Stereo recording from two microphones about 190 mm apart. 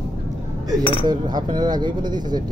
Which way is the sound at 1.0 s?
20° right (ahead or behind).